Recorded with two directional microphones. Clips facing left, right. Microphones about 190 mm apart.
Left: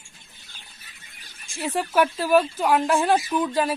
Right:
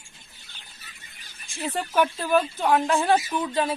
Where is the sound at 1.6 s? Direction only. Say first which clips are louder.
Left 2 dB; 10° left (ahead or behind).